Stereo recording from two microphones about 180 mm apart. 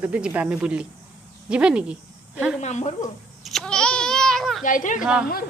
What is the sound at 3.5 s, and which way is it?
Babbling, 5° left (ahead or behind).